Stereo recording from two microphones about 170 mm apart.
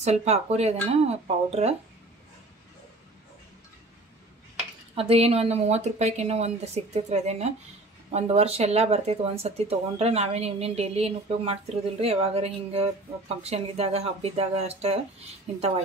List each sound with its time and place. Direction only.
0.0 s speech: 40° right (ahead or behind)
4.9 s speech: 35° right (ahead or behind)